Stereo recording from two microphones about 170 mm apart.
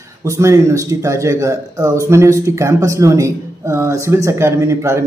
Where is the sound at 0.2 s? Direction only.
15° right (ahead or behind).